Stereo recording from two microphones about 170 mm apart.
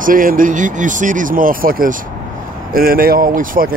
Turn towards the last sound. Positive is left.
turn(degrees=-55)  # may be behind; listen again after turning